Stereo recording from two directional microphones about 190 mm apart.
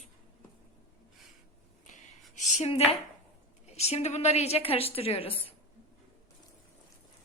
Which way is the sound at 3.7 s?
35° left (ahead or behind).